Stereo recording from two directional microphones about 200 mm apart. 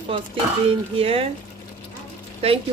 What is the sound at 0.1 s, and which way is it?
Speech, 25° right (ahead or behind).